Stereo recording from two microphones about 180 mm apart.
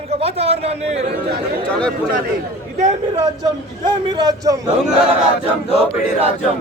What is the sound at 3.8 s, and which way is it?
Speech, 25° right (ahead or behind).